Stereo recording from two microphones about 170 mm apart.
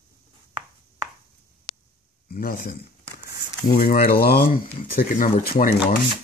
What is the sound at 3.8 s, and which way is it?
Speech, 60° left (ahead or behind).